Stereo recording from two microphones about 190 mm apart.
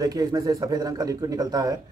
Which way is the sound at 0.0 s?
20° right (ahead or behind).